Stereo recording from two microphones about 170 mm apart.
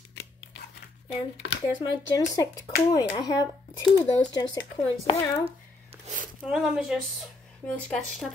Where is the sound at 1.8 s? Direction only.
25° left (ahead or behind).